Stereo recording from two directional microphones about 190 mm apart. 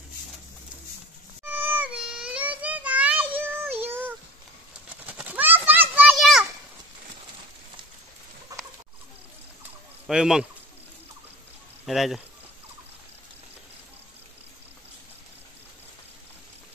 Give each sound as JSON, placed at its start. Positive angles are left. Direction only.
{"t": 1.4, "sound": "child singing", "side_deg": -10}
{"t": 3.8, "sound": "a sound", "side_deg": -10}
{"t": 5.0, "sound": "children playing", "side_deg": -10}
{"t": 8.5, "sound": "chicken", "side_deg": -20}
{"t": 10.0, "sound": "speech", "side_deg": 0}
{"t": 11.8, "sound": "speech", "side_deg": 0}